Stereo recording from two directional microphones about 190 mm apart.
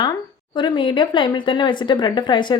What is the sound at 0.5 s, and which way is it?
A woman's voice, 25° left (ahead or behind).